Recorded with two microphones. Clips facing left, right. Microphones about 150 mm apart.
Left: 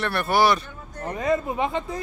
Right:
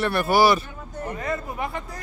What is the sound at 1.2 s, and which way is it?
Speech, 20° left (ahead or behind).